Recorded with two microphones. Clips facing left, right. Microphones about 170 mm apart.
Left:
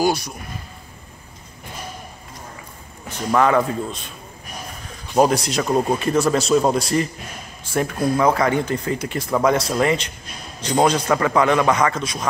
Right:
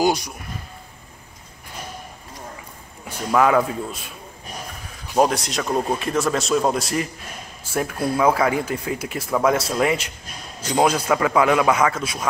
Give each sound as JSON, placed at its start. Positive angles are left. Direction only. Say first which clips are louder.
{"t": 0.0, "sound": "a man's voice", "louder": "even", "side_deg": -15}
{"t": 3.3, "sound": "a man's voice", "louder": "even", "side_deg": -5}
{"t": 5.1, "sound": "speech", "louder": "left 2 dB", "side_deg": 0}